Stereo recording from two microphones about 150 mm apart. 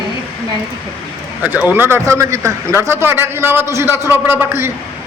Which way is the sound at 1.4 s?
10° right (ahead or behind).